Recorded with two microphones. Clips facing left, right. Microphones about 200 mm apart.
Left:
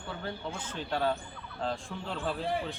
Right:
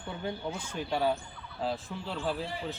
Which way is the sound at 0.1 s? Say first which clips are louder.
Right 3 dB; 15° right (ahead or behind).